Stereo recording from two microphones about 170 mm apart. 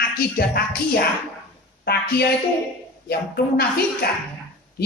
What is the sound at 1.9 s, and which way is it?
Speech, 70° left (ahead or behind).